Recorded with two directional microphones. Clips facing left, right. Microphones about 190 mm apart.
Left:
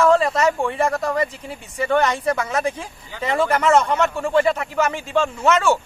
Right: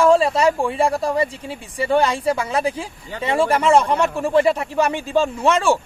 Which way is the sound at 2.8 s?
30° right (ahead or behind).